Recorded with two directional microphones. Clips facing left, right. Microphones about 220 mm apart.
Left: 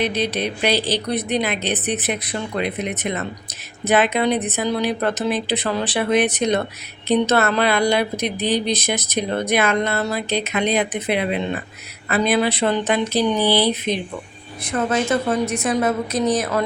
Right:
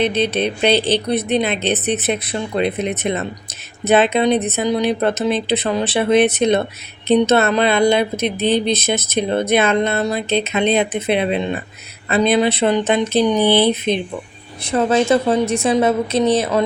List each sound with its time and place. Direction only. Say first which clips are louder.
0.0 s speech: right 4 dB; 25° right (ahead or behind)